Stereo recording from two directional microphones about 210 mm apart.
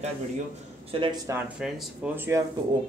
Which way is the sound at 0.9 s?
25° right (ahead or behind).